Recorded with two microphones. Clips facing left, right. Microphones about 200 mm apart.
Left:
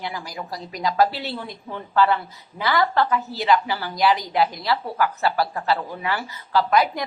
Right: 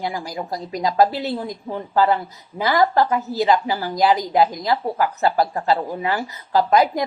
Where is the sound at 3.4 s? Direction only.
25° right (ahead or behind).